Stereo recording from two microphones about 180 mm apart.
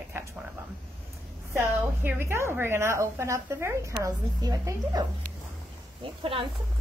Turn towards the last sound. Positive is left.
turn(degrees=-30)  # may be behind; listen again after turning